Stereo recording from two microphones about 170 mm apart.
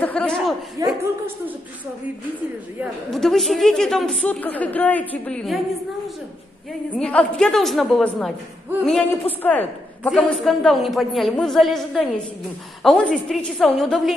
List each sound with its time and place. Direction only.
0.0 s chuckle: 5° left (ahead or behind)
0.8 s speech: 20° right (ahead or behind)
2.8 s a man's voice: centre (ahead or behind)
7.0 s a man's voice: 5° left (ahead or behind)